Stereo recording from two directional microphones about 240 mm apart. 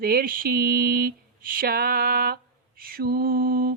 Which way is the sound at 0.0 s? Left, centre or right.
Right.